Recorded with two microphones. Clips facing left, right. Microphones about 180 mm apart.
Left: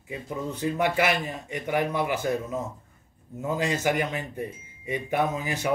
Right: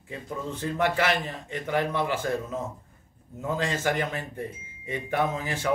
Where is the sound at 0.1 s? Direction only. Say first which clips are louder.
Left 2 dB; 15° left (ahead or behind).